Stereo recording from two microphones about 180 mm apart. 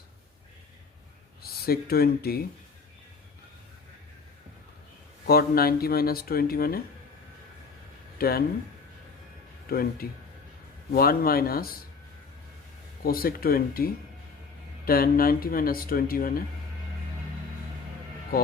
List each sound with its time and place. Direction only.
1.4 s speech: 60° left (ahead or behind)
5.2 s speech: 55° left (ahead or behind)
8.2 s speech: 55° left (ahead or behind)
9.6 s speech: 55° left (ahead or behind)
13.1 s speech: 55° left (ahead or behind)